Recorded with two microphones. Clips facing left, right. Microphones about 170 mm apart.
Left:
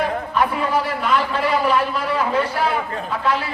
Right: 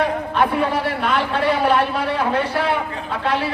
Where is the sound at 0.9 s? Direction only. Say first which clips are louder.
Even; 65° right (ahead or behind).